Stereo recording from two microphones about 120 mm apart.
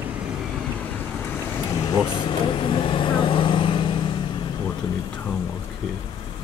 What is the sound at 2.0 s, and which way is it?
Vehicle, 45° left (ahead or behind).